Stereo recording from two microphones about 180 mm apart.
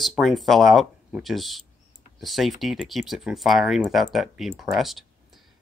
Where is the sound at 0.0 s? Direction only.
Centre (ahead or behind).